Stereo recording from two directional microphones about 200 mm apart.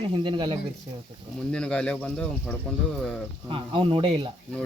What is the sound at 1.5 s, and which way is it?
Speech, 5° left (ahead or behind).